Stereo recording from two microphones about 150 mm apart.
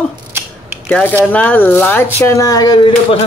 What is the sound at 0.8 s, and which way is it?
Speech, 10° left (ahead or behind).